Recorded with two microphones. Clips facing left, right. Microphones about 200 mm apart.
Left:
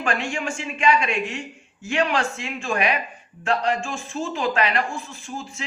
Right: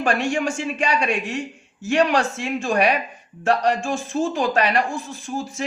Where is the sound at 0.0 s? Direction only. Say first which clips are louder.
Right 5 dB; 40° right (ahead or behind).